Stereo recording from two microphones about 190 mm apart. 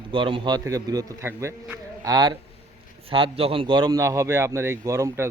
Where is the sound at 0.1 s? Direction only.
25° right (ahead or behind).